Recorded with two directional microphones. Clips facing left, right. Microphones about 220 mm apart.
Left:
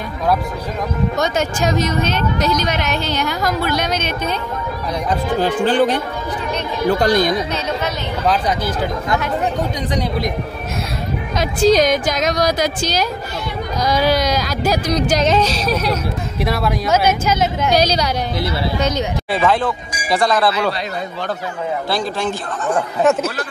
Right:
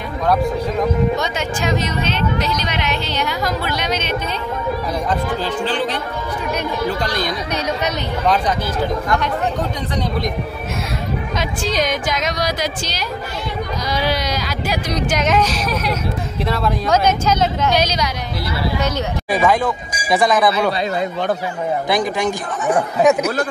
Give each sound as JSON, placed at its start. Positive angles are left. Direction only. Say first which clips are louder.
{"t": 1.1, "sound": "speech", "louder": "left 2 dB", "side_deg": 45}
{"t": 5.4, "sound": "speech", "louder": "left 6 dB", "side_deg": 50}
{"t": 7.0, "sound": "speech", "louder": "left 7 dB", "side_deg": 50}
{"t": 11.3, "sound": "speech", "louder": "left 9 dB", "side_deg": 40}
{"t": 16.4, "sound": "speech", "louder": "even", "side_deg": 10}
{"t": 17.7, "sound": "a woman's voice", "louder": "left 3 dB", "side_deg": 35}
{"t": 19.3, "sound": "speech", "louder": "right 1 dB", "side_deg": -15}
{"t": 21.8, "sound": "speech", "louder": "right 3 dB", "side_deg": -15}